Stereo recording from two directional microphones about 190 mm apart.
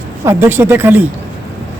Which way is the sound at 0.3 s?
10° right (ahead or behind).